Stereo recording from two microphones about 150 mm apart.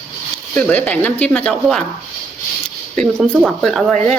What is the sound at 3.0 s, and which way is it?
Speech, 5° left (ahead or behind).